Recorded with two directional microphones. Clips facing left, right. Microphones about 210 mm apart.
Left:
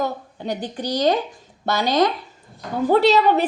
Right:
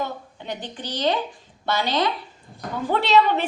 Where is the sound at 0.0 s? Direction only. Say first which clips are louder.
Left 5 dB; 40° left (ahead or behind).